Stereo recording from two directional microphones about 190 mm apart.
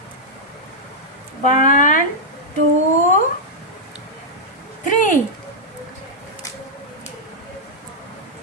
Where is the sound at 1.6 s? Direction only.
45° left (ahead or behind).